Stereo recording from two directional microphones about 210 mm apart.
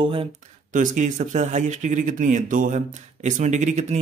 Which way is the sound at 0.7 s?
40° right (ahead or behind).